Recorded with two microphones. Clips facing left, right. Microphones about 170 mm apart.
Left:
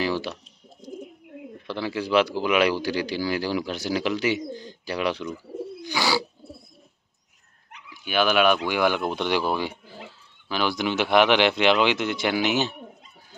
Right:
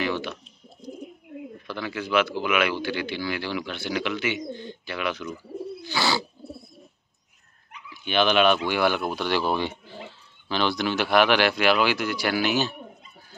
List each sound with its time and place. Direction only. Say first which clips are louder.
0.0 s bird: left 1 dB; 35° left (ahead or behind)
1.7 s speech: left 3 dB; 30° left (ahead or behind)
5.8 s bird: left 1 dB; 15° left (ahead or behind)
7.9 s speech: even; 10° left (ahead or behind)
9.4 s speech: even; 5° left (ahead or behind)
10.8 s speech: left 2 dB; 20° left (ahead or behind)